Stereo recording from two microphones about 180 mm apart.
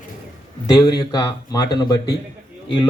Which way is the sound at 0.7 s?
20° left (ahead or behind).